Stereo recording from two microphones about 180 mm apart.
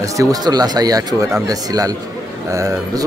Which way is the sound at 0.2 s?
20° right (ahead or behind).